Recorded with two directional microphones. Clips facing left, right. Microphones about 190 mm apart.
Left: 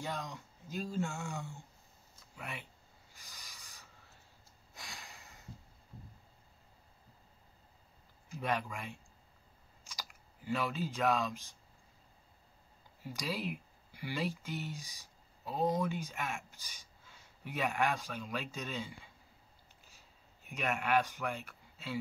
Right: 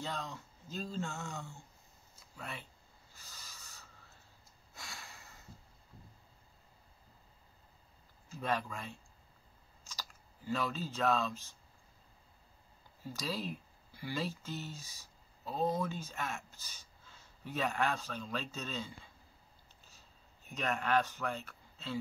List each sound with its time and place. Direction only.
0.0 s speech: 15° left (ahead or behind)
3.1 s owl: 15° left (ahead or behind)
4.7 s a sound: 15° left (ahead or behind)
8.3 s speech: 15° left (ahead or behind)
13.0 s speech: 15° left (ahead or behind)
19.8 s a sound: 10° left (ahead or behind)